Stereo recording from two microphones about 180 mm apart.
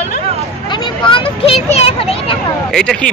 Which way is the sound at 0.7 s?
25° left (ahead or behind).